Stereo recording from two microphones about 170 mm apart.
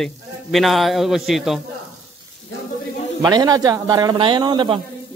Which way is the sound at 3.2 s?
25° right (ahead or behind).